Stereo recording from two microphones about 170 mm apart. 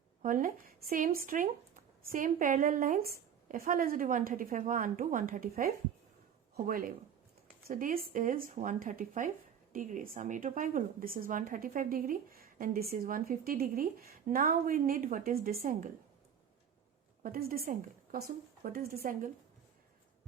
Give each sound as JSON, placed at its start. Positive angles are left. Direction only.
{"t": 0.2, "sound": "a woman's voice", "side_deg": -50}
{"t": 17.2, "sound": "a woman's voice", "side_deg": -60}